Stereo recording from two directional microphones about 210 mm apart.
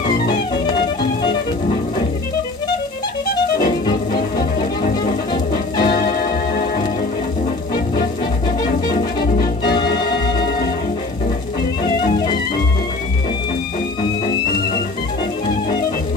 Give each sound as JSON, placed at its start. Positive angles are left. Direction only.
{"t": 3.6, "sound": "music", "side_deg": 20}
{"t": 5.3, "sound": "music", "side_deg": 20}
{"t": 8.8, "sound": "music", "side_deg": 50}